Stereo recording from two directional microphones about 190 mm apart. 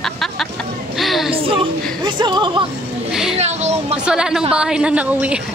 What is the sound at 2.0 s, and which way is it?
Speech, 25° right (ahead or behind).